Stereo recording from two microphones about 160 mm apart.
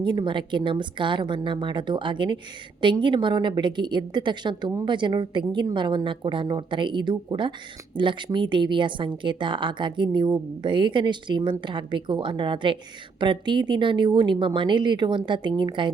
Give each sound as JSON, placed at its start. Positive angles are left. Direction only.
{"t": 0.0, "sound": "a woman's voice", "side_deg": -30}